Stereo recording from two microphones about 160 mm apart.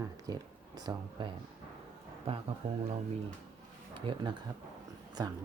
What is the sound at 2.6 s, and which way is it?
Speech, 40° right (ahead or behind).